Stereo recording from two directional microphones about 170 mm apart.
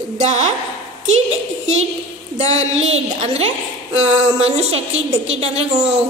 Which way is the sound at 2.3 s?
40° right (ahead or behind).